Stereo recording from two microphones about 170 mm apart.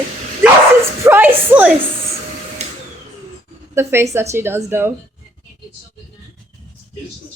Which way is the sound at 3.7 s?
15° right (ahead or behind).